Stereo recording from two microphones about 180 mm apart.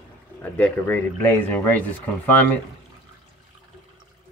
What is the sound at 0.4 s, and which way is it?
Speech, 10° left (ahead or behind).